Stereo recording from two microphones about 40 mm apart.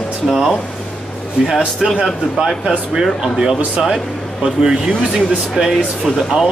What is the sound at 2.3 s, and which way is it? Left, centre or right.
Speech, centre.